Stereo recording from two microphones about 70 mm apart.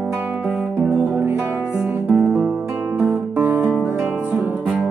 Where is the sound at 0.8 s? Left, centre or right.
Right.